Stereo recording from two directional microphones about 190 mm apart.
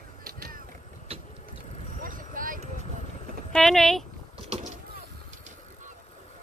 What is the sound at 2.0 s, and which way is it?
Vehicle, 45° right (ahead or behind).